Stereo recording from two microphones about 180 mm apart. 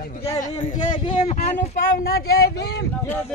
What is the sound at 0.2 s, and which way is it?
Speech, 35° left (ahead or behind).